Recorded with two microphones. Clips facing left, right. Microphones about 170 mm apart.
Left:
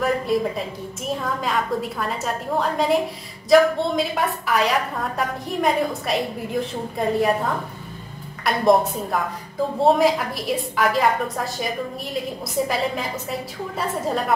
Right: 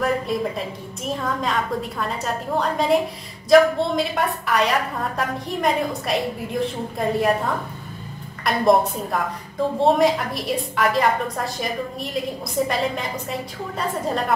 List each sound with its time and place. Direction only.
0.0 s a sound: centre (ahead or behind)
1.0 s a woman's voice: centre (ahead or behind)
8.5 s a woman's voice: centre (ahead or behind)